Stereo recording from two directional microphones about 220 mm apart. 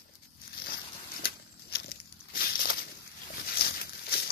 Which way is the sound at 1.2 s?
45° left (ahead or behind).